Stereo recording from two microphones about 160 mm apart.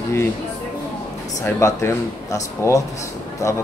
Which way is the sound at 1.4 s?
20° left (ahead or behind).